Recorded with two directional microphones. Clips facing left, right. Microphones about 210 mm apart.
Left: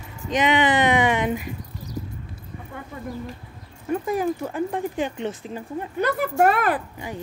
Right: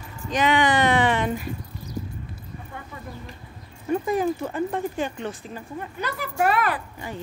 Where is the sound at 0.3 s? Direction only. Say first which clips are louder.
Left 1 dB; 20° left (ahead or behind).